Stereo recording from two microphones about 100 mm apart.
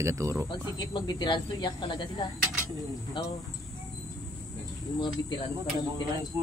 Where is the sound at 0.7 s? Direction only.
45° left (ahead or behind).